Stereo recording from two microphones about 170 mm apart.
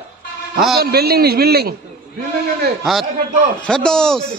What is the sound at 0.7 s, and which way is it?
Speech, 65° right (ahead or behind).